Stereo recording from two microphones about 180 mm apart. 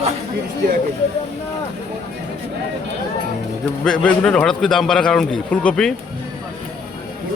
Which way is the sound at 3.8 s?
5° left (ahead or behind).